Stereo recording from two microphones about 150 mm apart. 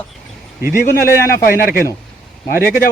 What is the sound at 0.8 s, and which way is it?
A man's voice, 80° left.